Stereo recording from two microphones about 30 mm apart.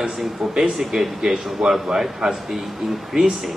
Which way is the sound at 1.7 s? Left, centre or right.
Centre.